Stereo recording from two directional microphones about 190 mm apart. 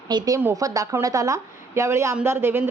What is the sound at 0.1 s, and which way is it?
A woman's voice, 20° right (ahead or behind).